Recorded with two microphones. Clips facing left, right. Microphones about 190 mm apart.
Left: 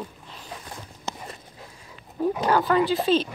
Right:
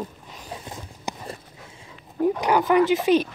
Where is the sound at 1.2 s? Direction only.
25° right (ahead or behind).